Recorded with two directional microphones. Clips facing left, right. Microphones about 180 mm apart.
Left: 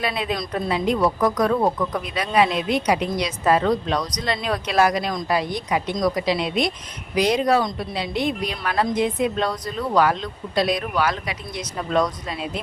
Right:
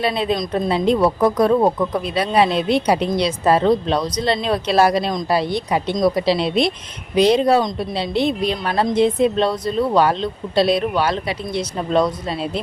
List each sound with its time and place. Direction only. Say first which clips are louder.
0.0 s a woman's voice: right 5 dB; 30° right (ahead or behind)